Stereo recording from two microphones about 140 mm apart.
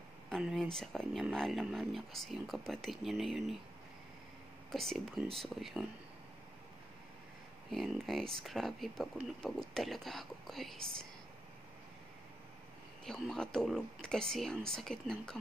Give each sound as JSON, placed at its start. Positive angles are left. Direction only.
{"t": 0.4, "sound": "speech", "side_deg": -5}
{"t": 4.6, "sound": "speech", "side_deg": 0}
{"t": 7.7, "sound": "speech", "side_deg": 0}
{"t": 13.0, "sound": "speech", "side_deg": 5}